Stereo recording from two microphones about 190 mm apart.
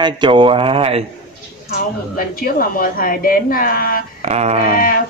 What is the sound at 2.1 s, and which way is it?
A woman's voice, 50° left (ahead or behind).